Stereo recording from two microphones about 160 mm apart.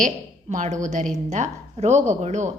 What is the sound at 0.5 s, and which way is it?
A woman's voice, 50° right (ahead or behind).